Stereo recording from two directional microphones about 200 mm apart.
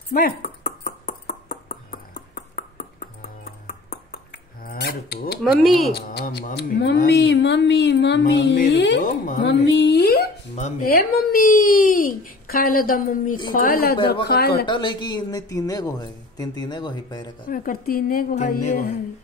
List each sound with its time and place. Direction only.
0.1 s a sound: 45° left (ahead or behind)
5.4 s speech: centre (ahead or behind)
5.9 s speech: 50° left (ahead or behind)
6.5 s a sound: 60° left (ahead or behind)
9.0 s speech: 40° left (ahead or behind)
9.5 s speech: 60° left (ahead or behind)
10.5 s speech: 40° left (ahead or behind)
14.7 s speech: 25° left (ahead or behind)
17.5 s speech: 45° left (ahead or behind)